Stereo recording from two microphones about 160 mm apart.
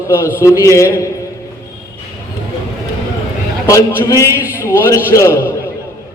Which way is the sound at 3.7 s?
20° left (ahead or behind).